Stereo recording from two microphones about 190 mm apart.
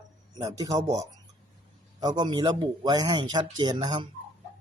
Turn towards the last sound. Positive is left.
turn(degrees=-25)  # may be behind; listen again after turning